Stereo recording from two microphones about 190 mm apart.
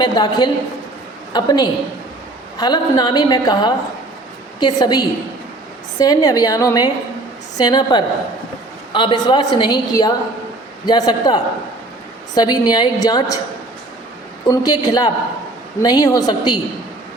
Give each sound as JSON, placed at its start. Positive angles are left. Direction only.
{"t": 0.0, "sound": "a woman's voice", "side_deg": 25}
{"t": 14.4, "sound": "a woman's voice", "side_deg": 20}